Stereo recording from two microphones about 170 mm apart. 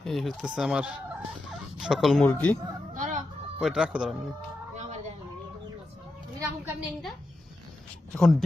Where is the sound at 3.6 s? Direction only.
5° right (ahead or behind).